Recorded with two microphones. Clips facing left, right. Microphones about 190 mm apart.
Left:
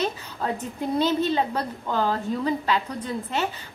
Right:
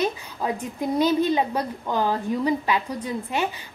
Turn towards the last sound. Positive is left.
turn(degrees=-15)  # may be behind; listen again after turning